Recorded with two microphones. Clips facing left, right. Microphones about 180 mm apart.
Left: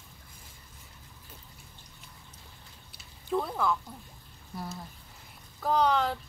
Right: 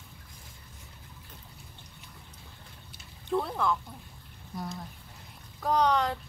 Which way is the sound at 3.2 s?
Centre (ahead or behind).